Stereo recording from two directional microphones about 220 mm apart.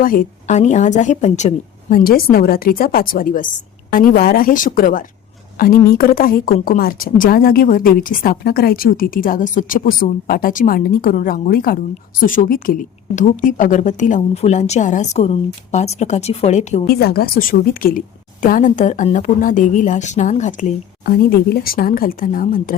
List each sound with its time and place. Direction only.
0.0 s a woman's voice: 40° left (ahead or behind)
16.9 s speech: 45° left (ahead or behind)